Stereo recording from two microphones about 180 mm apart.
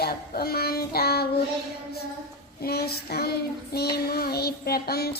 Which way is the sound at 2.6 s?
60° left (ahead or behind).